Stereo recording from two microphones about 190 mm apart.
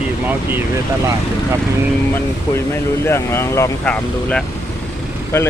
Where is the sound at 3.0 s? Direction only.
15° left (ahead or behind).